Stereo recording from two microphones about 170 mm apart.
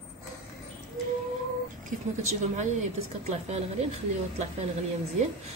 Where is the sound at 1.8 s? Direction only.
40° right (ahead or behind).